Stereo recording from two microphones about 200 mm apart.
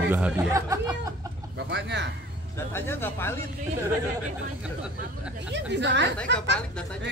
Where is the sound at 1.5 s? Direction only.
60° right (ahead or behind).